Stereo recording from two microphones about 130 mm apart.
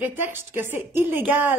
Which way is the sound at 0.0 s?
15° right (ahead or behind).